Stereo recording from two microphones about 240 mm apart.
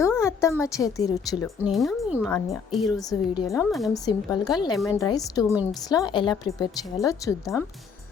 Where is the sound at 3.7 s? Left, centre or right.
Centre.